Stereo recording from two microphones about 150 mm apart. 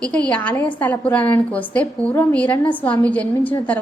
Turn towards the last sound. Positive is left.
turn(degrees=10)  # may be behind; listen again after turning